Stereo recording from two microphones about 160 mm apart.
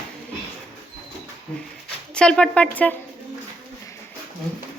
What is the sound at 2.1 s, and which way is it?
Speech, 5° left (ahead or behind).